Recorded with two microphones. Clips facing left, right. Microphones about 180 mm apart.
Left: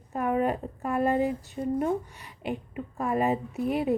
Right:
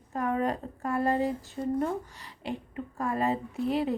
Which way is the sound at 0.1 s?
15° left (ahead or behind).